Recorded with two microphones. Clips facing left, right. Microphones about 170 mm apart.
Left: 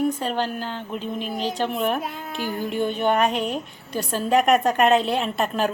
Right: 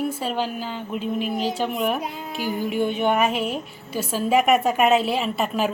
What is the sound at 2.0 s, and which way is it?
Speech, 20° right (ahead or behind).